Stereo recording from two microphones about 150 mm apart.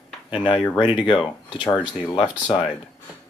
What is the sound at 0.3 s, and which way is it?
Speech, 30° left (ahead or behind).